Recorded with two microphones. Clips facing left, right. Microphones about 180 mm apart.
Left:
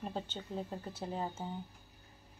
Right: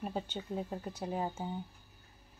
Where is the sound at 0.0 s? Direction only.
10° right (ahead or behind).